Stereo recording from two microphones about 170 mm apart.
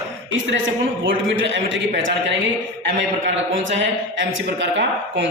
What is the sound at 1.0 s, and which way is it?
A man's voice, 90° right.